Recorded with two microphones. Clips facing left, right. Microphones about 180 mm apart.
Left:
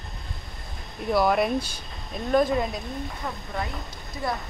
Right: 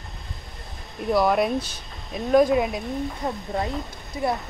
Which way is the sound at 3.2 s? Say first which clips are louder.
Right 5 dB; 30° right (ahead or behind).